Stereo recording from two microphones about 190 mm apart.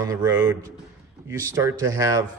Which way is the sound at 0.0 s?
15° right (ahead or behind).